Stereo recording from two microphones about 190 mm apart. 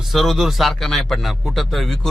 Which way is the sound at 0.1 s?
Centre (ahead or behind).